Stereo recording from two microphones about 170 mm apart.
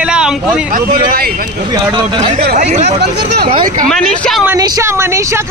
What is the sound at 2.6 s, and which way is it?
Speech, 40° right (ahead or behind).